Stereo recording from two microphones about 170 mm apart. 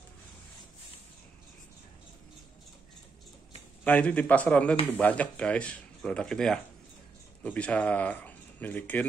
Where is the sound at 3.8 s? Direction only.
10° left (ahead or behind).